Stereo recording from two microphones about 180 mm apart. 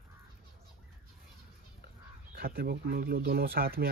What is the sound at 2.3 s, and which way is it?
Speech, 60° right (ahead or behind).